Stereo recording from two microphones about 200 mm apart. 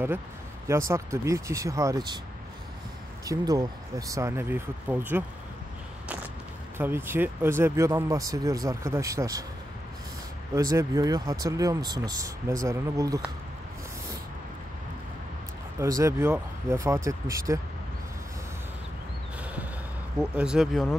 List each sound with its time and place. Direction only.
0.7 s speech: 15° right (ahead or behind)
3.3 s speech: 15° right (ahead or behind)
6.8 s speech: 10° right (ahead or behind)
10.5 s speech: 15° right (ahead or behind)
15.8 s speech: 15° right (ahead or behind)
20.2 s speech: 5° right (ahead or behind)